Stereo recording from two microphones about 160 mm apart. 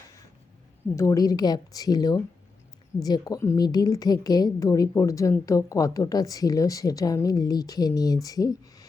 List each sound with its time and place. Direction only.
0.9 s a woman's voice: 20° left (ahead or behind)